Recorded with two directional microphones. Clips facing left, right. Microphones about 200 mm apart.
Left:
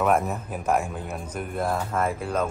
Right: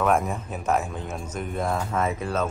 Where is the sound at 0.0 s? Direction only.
5° left (ahead or behind).